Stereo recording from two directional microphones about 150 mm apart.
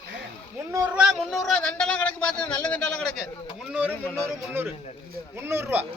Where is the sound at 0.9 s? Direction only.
5° right (ahead or behind); by 2.9 s 10° left (ahead or behind).